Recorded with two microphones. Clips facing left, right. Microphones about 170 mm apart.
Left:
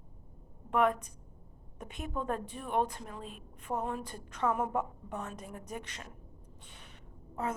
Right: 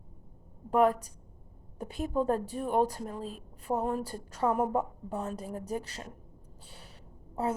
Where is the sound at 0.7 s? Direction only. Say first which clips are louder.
Right 4 dB; 35° right (ahead or behind).